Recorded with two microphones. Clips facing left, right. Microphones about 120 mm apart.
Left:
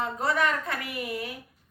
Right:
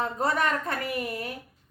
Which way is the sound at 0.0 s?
40° right (ahead or behind).